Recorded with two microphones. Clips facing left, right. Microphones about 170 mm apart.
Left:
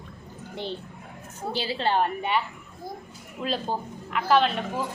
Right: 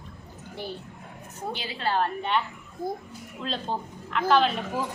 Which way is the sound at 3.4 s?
5° left (ahead or behind).